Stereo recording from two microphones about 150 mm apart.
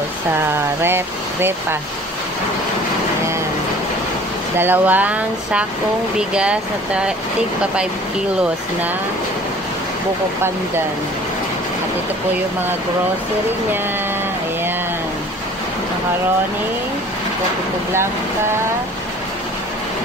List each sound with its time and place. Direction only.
0.8 s speech: 15° right (ahead or behind)
4.6 s speech: 10° right (ahead or behind)